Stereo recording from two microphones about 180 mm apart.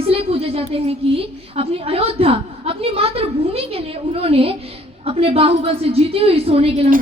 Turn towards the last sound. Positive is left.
turn(degrees=-35)  # may be behind; listen again after turning